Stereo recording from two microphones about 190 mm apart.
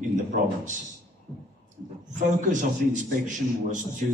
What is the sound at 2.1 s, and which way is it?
A man's voice, 40° right (ahead or behind).